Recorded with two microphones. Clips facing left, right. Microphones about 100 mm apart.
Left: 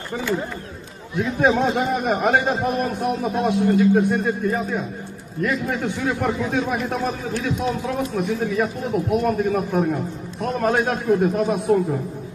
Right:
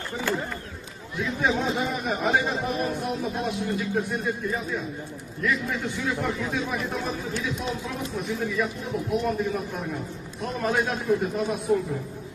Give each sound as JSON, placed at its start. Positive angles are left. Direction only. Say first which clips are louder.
{"t": 1.1, "sound": "a man's voice", "louder": "left 7 dB", "side_deg": 55}